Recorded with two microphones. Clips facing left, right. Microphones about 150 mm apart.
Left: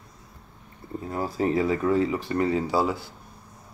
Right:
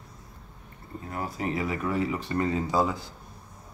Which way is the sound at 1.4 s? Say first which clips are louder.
Left 7 dB; 30° left (ahead or behind).